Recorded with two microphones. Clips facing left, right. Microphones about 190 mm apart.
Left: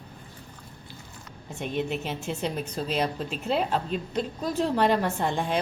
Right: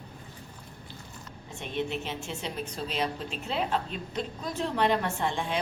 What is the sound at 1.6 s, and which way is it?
A woman's voice, 45° left (ahead or behind).